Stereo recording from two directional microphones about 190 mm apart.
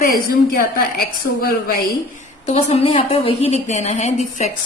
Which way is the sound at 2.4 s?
35° left (ahead or behind).